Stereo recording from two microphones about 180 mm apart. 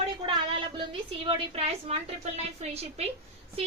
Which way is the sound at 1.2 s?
30° right (ahead or behind).